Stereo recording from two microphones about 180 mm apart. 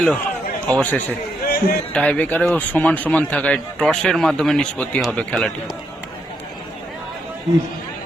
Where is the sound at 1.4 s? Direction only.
55° left (ahead or behind).